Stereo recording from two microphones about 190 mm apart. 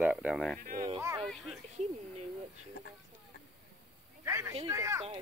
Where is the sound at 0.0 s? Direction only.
5° right (ahead or behind).